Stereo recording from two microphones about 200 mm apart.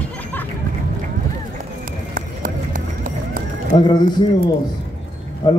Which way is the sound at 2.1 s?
45° right (ahead or behind).